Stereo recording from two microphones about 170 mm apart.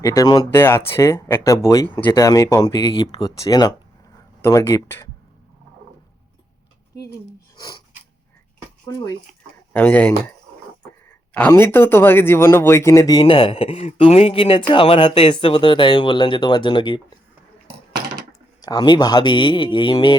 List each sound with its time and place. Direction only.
0.0 s speech: 20° left (ahead or behind)
7.5 s a sound: 25° left (ahead or behind)
8.9 s speech: 20° left (ahead or behind)
9.7 s speech: 10° left (ahead or behind)
11.3 s speech: 10° left (ahead or behind); by 17.0 s 25° left (ahead or behind)
18.6 s speech: 25° left (ahead or behind)